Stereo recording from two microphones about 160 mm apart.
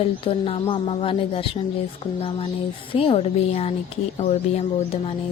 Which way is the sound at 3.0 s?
35° left (ahead or behind).